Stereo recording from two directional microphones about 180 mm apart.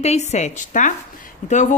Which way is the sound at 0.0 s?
35° left (ahead or behind).